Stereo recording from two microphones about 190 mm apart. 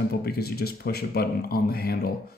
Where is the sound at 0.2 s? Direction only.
55° left (ahead or behind).